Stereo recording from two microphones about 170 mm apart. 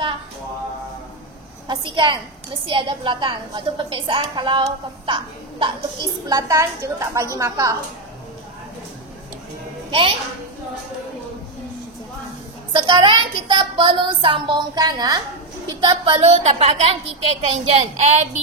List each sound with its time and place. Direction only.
1.7 s a woman's voice: 25° right (ahead or behind)
9.8 s a child's voice: 30° right (ahead or behind)
12.7 s a woman's voice: 25° right (ahead or behind); by 18.4 s 40° right (ahead or behind)